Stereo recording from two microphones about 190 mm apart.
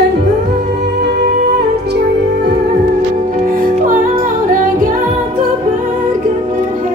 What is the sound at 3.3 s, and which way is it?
Music, 45° right (ahead or behind).